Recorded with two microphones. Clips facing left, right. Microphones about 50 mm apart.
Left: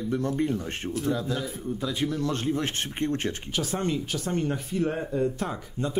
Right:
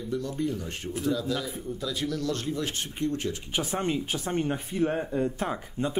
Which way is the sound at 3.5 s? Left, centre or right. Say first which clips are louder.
Even; right.